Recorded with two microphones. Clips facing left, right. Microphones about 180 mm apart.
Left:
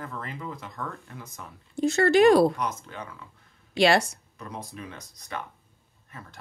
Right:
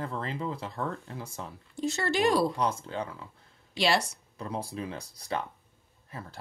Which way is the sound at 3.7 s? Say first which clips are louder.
Left 6 dB; 55° left (ahead or behind).